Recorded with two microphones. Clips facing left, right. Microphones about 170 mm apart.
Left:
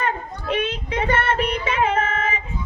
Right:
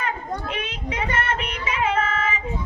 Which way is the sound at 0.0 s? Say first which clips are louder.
Left 2 dB; 35° left (ahead or behind).